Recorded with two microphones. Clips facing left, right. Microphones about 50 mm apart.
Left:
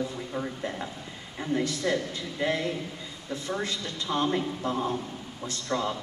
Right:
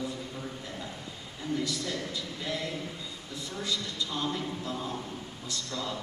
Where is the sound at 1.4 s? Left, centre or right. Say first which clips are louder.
Left 5 dB; left.